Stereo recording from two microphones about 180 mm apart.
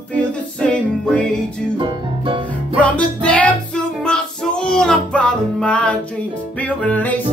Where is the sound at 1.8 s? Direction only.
30° right (ahead or behind).